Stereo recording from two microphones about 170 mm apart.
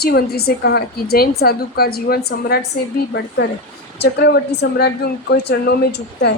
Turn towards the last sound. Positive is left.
turn(degrees=80)